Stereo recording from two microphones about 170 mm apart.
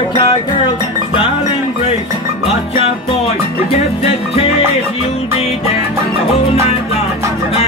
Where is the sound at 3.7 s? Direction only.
40° left (ahead or behind).